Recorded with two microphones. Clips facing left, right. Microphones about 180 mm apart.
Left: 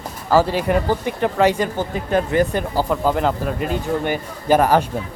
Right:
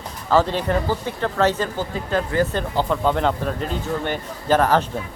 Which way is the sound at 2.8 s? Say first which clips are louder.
Left 1 dB; 5° left (ahead or behind).